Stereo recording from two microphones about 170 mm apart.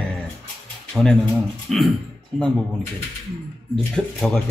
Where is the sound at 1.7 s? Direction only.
Centre (ahead or behind).